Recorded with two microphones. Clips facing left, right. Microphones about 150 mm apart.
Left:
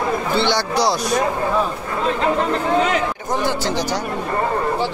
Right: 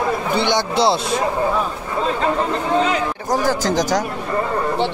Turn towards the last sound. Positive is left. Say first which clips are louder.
# right 3 dB
turn(degrees=-45)  # may be behind; listen again after turning